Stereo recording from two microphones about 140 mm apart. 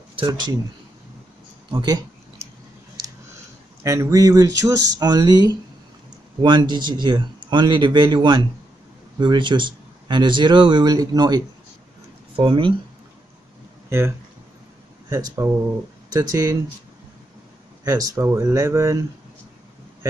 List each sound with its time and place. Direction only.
0.1 s speech: 35° right (ahead or behind)
1.7 s speech: 35° right (ahead or behind)
2.4 s chewing: 20° right (ahead or behind)
3.8 s speech: 25° right (ahead or behind); by 12.7 s 40° right (ahead or behind)
13.8 s speech: 20° right (ahead or behind)
17.8 s speech: 25° right (ahead or behind)